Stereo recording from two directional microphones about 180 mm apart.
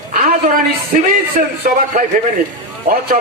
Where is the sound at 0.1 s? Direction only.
50° right (ahead or behind).